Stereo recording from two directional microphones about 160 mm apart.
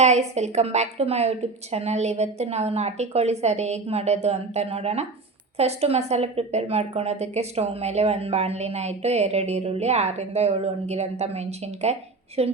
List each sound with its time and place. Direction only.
0.0 s a woman's voice: 45° right (ahead or behind)